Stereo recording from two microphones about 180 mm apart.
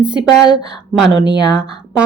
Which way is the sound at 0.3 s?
80° right.